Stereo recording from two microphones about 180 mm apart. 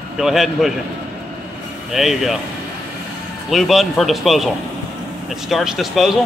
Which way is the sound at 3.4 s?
Centre (ahead or behind).